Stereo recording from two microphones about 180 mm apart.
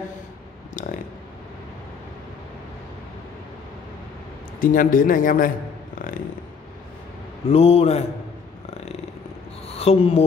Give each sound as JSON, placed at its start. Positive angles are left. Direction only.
{"t": 0.8, "sound": "a sound", "side_deg": 45}
{"t": 4.6, "sound": "speech", "side_deg": 50}
{"t": 5.9, "sound": "music", "side_deg": 50}
{"t": 7.4, "sound": "a man's voice", "side_deg": 35}
{"t": 9.7, "sound": "speech", "side_deg": 35}